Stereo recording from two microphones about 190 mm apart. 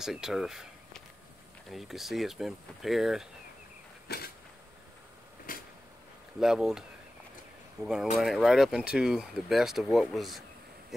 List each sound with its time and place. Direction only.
0.0 s speech: centre (ahead or behind)
4.1 s creak: 55° left (ahead or behind)
5.5 s a sound: 45° left (ahead or behind)
6.4 s speech: 5° right (ahead or behind)
7.8 s speech: 5° right (ahead or behind)